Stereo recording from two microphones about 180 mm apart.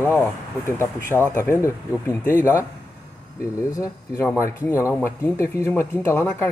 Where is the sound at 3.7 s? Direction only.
20° left (ahead or behind).